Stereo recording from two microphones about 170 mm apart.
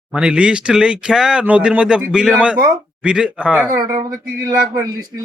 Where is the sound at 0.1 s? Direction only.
5° right (ahead or behind).